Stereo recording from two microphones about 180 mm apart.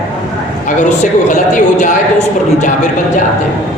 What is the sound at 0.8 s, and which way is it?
A man's voice, 45° left (ahead or behind).